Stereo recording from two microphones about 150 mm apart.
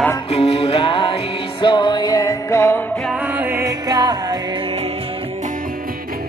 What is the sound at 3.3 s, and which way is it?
Music, 15° right (ahead or behind).